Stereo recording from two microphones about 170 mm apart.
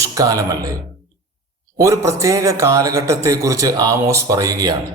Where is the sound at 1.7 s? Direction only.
15° right (ahead or behind).